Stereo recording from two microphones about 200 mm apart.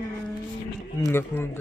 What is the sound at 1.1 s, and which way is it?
Speech, 10° left (ahead or behind).